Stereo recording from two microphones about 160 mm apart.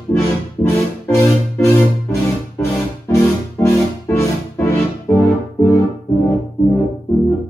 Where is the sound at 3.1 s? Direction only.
20° left (ahead or behind).